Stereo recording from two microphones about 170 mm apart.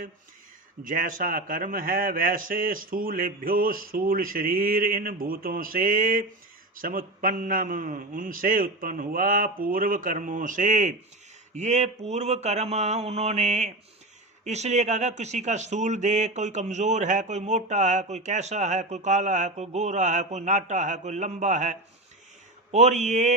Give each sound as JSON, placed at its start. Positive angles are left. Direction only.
{"t": 0.9, "sound": "a man's voice", "side_deg": -50}